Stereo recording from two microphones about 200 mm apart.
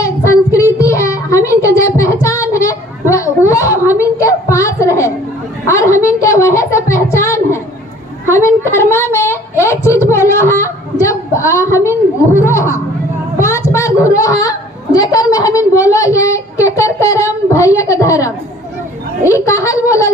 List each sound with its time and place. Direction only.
0.0 s child singing: 15° left (ahead or behind)
2.6 s children playing: 15° left (ahead or behind)
4.0 s a sound: 15° left (ahead or behind)